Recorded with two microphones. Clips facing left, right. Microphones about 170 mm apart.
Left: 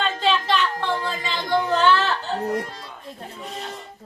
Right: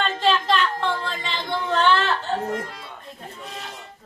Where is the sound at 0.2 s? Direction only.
Centre (ahead or behind).